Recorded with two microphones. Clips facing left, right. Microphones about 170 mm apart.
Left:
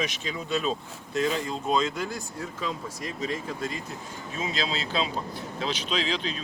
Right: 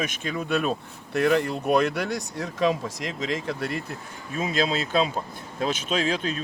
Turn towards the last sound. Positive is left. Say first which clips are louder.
# right 4 dB
turn(degrees=-50)  # may be behind; listen again after turning